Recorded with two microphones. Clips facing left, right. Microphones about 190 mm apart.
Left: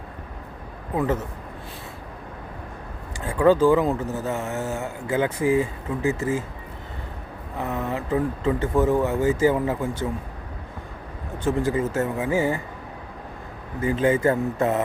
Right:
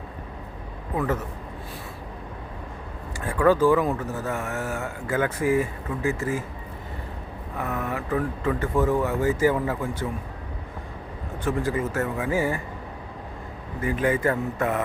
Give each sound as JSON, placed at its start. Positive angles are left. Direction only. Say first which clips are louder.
{"t": 0.9, "sound": "a man's voice", "louder": "left 2 dB", "side_deg": 25}
{"t": 3.2, "sound": "a man's voice", "louder": "left 2 dB", "side_deg": 20}
{"t": 7.6, "sound": "a man's voice", "louder": "left 2 dB", "side_deg": 25}
{"t": 11.4, "sound": "a man's voice", "louder": "left 3 dB", "side_deg": 25}
{"t": 13.8, "sound": "a man's voice", "louder": "left 3 dB", "side_deg": 25}